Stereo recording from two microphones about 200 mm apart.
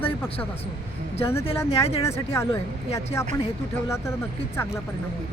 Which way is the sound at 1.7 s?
30° left (ahead or behind).